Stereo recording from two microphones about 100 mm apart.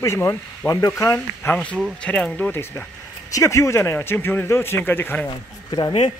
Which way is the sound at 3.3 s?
30° left (ahead or behind).